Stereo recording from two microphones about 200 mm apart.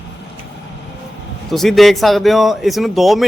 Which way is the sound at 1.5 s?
Centre (ahead or behind).